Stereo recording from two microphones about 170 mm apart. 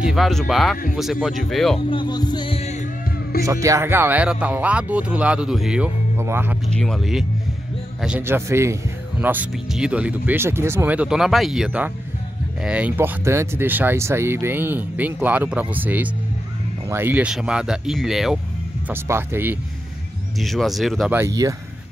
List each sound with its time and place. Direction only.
0.0 s speech: centre (ahead or behind)
1.9 s music: 25° left (ahead or behind)
3.4 s speech: 20° right (ahead or behind)
6.7 s speech: centre (ahead or behind)
18.9 s speech: 15° right (ahead or behind)
20.3 s speech: centre (ahead or behind)
21.2 s speech: 20° right (ahead or behind)